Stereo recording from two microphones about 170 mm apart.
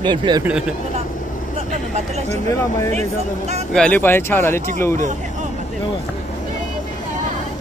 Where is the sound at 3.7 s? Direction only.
5° left (ahead or behind).